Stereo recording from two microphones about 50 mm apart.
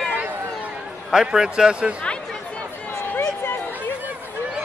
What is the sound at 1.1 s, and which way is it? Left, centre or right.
Speech, centre.